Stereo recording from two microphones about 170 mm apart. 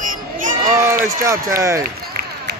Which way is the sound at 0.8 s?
15° right (ahead or behind).